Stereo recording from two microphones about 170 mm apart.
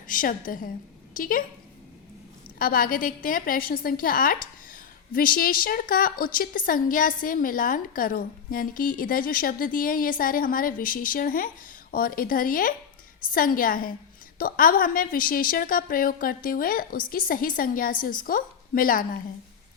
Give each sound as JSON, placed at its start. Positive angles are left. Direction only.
{"t": 0.1, "sound": "a woman's voice", "side_deg": 55}
{"t": 2.6, "sound": "a woman's voice", "side_deg": 55}